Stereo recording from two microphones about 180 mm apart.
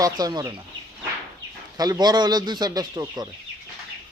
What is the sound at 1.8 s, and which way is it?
A man's voice, 20° right (ahead or behind).